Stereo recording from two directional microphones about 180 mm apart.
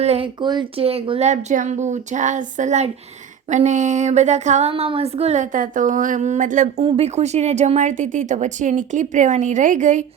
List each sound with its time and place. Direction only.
0.0 s speech: 35° right (ahead or behind)
6.8 s a woman's voice: 35° right (ahead or behind)